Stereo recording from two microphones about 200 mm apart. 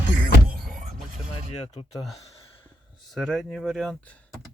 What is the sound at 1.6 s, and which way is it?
Speech, 30° left (ahead or behind).